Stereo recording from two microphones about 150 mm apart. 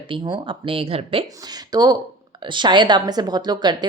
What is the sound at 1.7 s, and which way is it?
A woman's voice, 25° right (ahead or behind).